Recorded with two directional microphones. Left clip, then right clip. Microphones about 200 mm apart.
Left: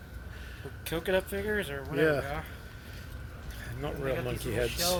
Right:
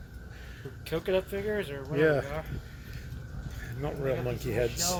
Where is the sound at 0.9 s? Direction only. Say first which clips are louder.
Right 1 dB; 60° left (ahead or behind).